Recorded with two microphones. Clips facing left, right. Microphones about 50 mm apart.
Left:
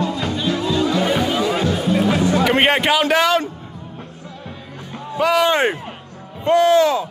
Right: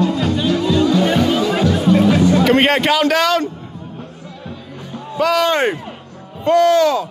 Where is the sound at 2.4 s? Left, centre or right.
Centre.